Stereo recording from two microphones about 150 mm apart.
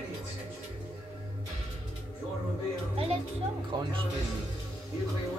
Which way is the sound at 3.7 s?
30° right (ahead or behind).